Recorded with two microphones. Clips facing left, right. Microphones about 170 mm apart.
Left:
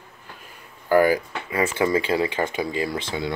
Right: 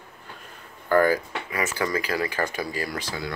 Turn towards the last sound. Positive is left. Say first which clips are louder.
# left 4 dB
turn(degrees=25)  # may be behind; listen again after turning